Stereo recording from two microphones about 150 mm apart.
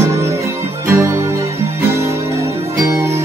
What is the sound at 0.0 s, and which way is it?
Music, 20° right (ahead or behind).